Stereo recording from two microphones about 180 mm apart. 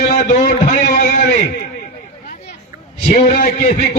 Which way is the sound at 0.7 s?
45° left (ahead or behind).